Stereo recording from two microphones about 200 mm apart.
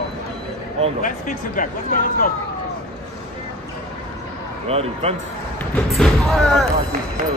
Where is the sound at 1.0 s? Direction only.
40° left (ahead or behind).